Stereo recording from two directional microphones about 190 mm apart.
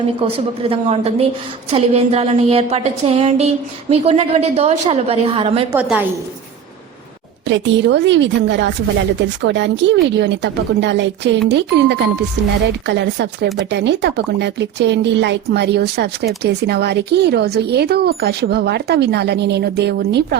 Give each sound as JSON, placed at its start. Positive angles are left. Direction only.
{"t": 0.2, "sound": "a sound", "side_deg": -30}
{"t": 5.7, "sound": "a woman's voice", "side_deg": -5}
{"t": 7.4, "sound": "a woman's voice", "side_deg": -70}